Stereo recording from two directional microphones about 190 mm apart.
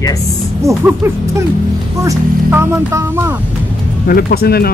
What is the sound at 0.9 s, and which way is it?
Speech, 10° right (ahead or behind).